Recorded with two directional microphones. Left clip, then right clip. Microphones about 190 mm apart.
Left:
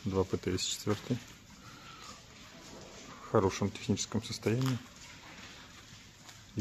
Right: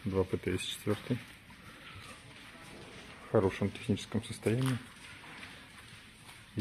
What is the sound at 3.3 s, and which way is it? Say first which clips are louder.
Speech: even; centre (ahead or behind).